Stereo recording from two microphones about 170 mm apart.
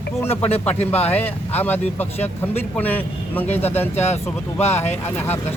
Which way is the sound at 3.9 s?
40° left (ahead or behind).